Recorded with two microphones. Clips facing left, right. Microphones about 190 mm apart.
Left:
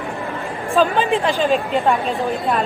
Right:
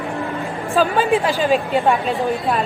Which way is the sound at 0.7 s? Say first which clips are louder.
Even; centre (ahead or behind).